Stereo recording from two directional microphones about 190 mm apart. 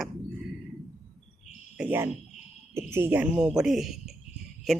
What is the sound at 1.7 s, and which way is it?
Speech, 10° right (ahead or behind).